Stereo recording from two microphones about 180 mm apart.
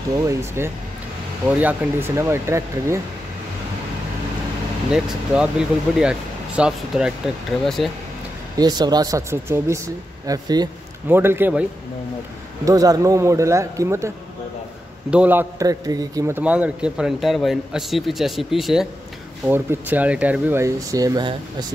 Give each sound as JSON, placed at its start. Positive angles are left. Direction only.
{"t": 0.3, "sound": "speech", "side_deg": -15}
{"t": 4.9, "sound": "a man's voice", "side_deg": -5}
{"t": 8.5, "sound": "speech", "side_deg": -20}
{"t": 12.6, "sound": "a man's voice", "side_deg": -20}